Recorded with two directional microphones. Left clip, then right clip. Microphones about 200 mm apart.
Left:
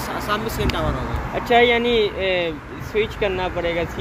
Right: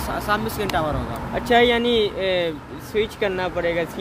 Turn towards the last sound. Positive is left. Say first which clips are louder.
# even
turn(degrees=-10)  # may be behind; listen again after turning